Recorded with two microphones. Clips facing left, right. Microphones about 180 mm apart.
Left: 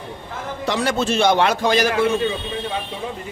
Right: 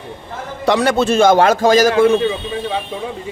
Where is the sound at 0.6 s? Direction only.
70° right (ahead or behind); by 2.0 s 45° right (ahead or behind).